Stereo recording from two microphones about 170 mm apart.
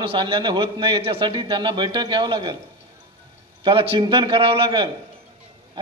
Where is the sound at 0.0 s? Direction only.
30° right (ahead or behind).